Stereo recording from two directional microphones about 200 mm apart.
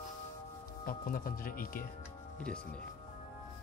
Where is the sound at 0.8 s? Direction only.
45° left (ahead or behind).